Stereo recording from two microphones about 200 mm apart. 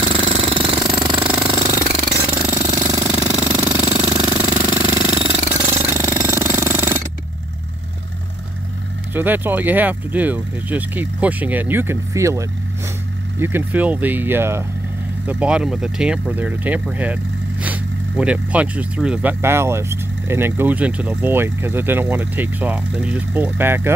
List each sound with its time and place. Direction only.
0.0 s jackhammer: 25° right (ahead or behind)
0.7 s jackhammer: 5° right (ahead or behind)
1.7 s jackhammer: 35° right (ahead or behind)
2.4 s jackhammer: 15° right (ahead or behind)
3.1 s jackhammer: 5° right (ahead or behind)
9.1 s speech: 10° right (ahead or behind)